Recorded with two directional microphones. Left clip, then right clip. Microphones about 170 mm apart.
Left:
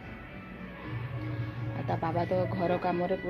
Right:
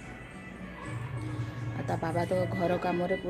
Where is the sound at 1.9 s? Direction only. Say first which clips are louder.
Even; 5° right (ahead or behind).